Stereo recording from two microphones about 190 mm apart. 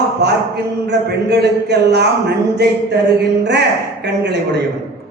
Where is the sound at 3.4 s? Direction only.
65° right (ahead or behind).